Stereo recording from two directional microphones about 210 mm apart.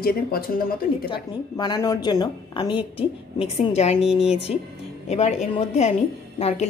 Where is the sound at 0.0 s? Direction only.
45° left (ahead or behind).